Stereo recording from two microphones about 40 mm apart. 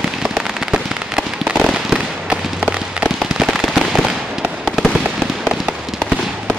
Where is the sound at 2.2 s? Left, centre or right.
Right.